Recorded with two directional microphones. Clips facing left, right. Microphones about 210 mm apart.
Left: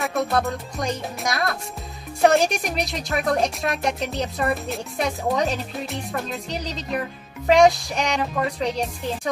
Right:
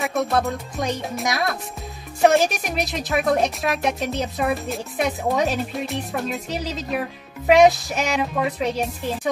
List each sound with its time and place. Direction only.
0.0 s speech: centre (ahead or behind)